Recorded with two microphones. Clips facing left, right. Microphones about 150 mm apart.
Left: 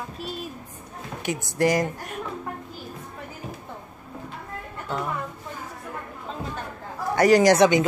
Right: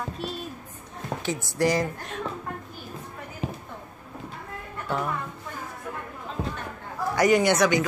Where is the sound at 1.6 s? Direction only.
50° left (ahead or behind).